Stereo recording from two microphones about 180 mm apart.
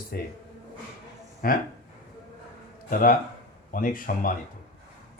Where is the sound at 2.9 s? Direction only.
50° left (ahead or behind).